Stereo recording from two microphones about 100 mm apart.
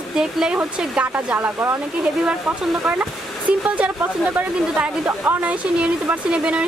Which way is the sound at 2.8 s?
20° right (ahead or behind).